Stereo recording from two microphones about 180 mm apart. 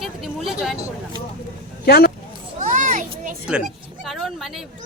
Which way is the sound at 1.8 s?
60° left (ahead or behind).